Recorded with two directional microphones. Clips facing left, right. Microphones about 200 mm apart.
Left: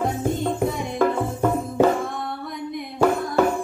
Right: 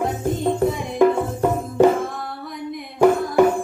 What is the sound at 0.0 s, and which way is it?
Music, centre (ahead or behind).